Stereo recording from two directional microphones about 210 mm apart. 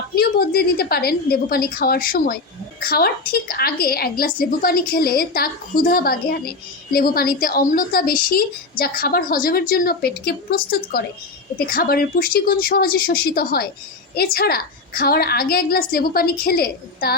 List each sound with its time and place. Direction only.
0.2 s a woman's voice: 45° left (ahead or behind)